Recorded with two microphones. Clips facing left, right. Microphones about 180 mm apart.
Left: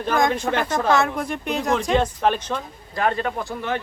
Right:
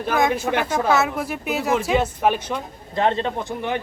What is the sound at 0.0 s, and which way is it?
Speech, 5° right (ahead or behind).